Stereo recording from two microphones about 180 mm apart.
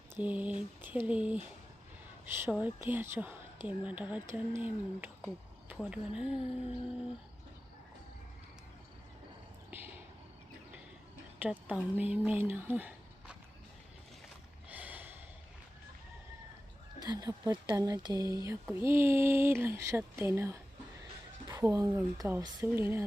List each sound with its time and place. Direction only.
0.2 s speech: 10° right (ahead or behind)
2.4 s speech: 10° right (ahead or behind)
9.6 s a sound: 10° right (ahead or behind)
11.3 s speech: 10° right (ahead or behind)
14.7 s a sound: 10° right (ahead or behind)
17.0 s speech: 20° right (ahead or behind)